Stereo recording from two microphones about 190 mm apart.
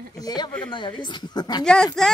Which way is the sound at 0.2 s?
20° left (ahead or behind).